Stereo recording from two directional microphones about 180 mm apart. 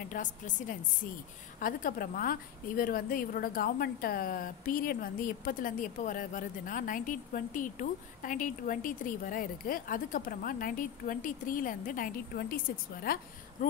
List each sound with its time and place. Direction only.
0.1 s a woman's voice: 45° left (ahead or behind)